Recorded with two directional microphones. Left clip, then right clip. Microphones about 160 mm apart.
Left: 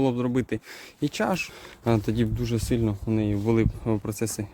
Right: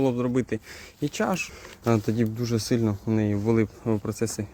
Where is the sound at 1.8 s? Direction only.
25° left (ahead or behind).